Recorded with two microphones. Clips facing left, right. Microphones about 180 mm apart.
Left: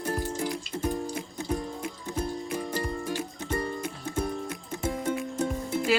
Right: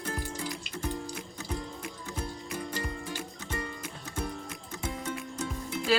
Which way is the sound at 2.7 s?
35° left (ahead or behind).